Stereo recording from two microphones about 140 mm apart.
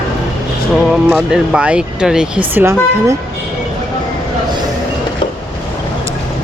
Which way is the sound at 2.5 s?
15° right (ahead or behind).